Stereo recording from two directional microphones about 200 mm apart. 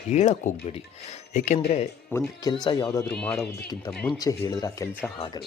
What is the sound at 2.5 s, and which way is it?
Speech, 20° left (ahead or behind).